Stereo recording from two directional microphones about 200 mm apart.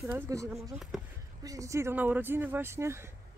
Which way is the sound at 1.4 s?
15° right (ahead or behind).